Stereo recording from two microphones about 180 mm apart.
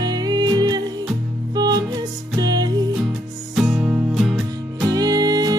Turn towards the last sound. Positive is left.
turn(degrees=-20)  # may be behind; listen again after turning